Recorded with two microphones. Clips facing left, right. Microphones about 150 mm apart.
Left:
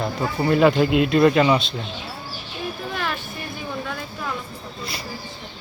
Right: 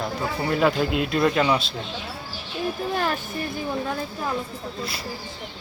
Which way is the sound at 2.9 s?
40° right (ahead or behind).